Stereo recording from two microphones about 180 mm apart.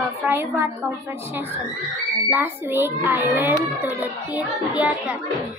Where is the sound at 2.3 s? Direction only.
10° right (ahead or behind).